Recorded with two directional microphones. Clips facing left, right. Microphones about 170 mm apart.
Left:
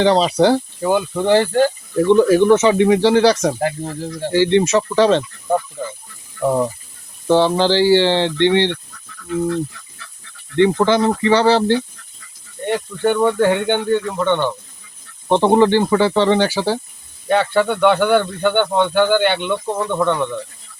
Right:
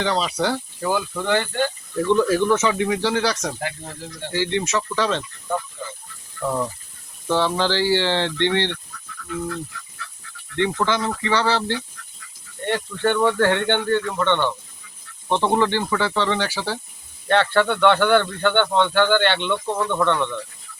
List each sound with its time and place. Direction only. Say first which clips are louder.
0.0 s speech: left 9 dB; 30° left (ahead or behind)
2.0 s speech: left 6 dB; 20° left (ahead or behind)
5.8 s a sound: left 7 dB; 40° left (ahead or behind)
6.4 s speech: left 7 dB; 25° left (ahead or behind)
10.6 s speech: left 8 dB; 30° left (ahead or behind)
12.6 s speech: left 4 dB; 10° left (ahead or behind)
15.3 s speech: left 7 dB; 30° left (ahead or behind)
17.2 s speech: left 2 dB; 10° left (ahead or behind)